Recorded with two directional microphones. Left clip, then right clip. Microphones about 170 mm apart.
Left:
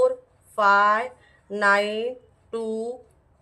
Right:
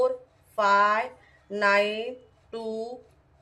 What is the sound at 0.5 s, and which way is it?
Speech, 25° left (ahead or behind).